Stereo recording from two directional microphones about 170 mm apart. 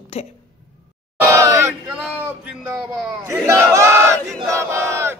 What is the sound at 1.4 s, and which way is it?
Speech, 15° right (ahead or behind).